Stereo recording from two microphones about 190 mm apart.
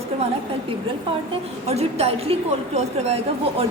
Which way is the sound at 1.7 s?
35° right (ahead or behind).